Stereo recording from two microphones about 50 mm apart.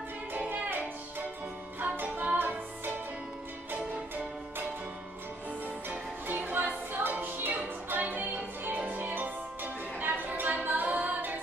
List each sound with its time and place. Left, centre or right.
0.3 s music: right
6.2 s music: right